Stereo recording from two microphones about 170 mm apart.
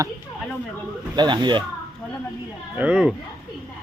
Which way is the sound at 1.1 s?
25° right (ahead or behind).